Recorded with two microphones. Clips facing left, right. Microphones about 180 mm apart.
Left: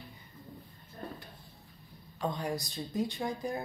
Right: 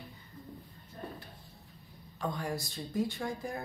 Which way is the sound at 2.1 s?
20° left (ahead or behind).